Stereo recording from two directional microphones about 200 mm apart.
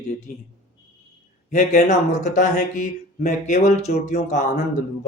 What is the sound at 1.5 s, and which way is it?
A man's voice, 35° left (ahead or behind).